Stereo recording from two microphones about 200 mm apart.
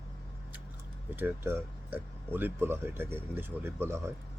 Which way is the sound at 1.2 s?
10° right (ahead or behind).